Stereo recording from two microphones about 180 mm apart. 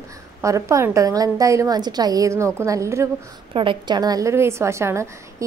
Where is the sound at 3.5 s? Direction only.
25° right (ahead or behind).